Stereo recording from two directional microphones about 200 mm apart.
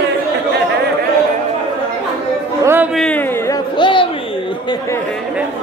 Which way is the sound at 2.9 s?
5° left (ahead or behind).